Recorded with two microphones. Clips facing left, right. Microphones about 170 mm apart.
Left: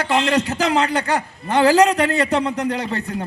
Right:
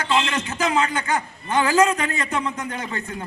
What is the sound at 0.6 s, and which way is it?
Speech, 65° left (ahead or behind).